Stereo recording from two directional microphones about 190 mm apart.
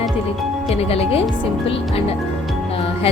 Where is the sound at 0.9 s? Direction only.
30° left (ahead or behind).